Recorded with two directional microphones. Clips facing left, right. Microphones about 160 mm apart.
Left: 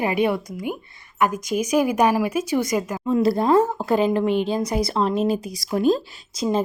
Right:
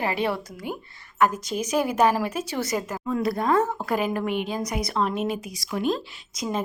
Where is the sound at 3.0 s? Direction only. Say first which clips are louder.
Left 6 dB; 25° left (ahead or behind).